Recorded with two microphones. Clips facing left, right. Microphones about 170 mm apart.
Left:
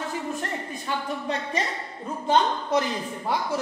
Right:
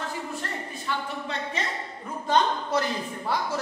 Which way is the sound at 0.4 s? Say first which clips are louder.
Left 3 dB; 45° left (ahead or behind).